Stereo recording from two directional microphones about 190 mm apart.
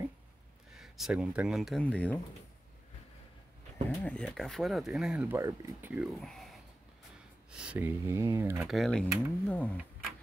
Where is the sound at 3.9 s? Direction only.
10° left (ahead or behind); by 6.1 s 10° right (ahead or behind).